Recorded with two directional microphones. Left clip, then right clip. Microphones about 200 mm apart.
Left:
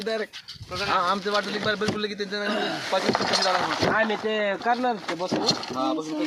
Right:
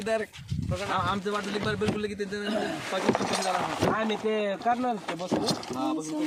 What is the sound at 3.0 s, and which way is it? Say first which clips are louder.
Speech: right 1 dB; 5° right (ahead or behind).